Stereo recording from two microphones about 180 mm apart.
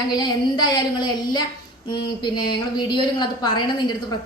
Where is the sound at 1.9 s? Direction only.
25° left (ahead or behind).